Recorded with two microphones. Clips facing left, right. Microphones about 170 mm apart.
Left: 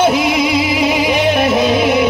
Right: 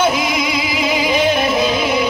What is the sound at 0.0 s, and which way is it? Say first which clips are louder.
Music: left 4 dB; 65° left (ahead or behind).